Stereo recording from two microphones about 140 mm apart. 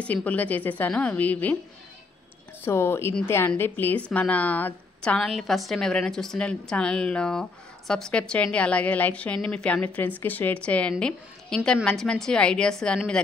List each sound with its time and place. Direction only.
0.0 s a woman's voice: 10° left (ahead or behind)
2.6 s a woman's voice: 15° left (ahead or behind)